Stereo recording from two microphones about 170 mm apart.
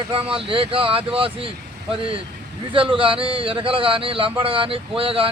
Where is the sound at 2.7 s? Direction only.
30° right (ahead or behind).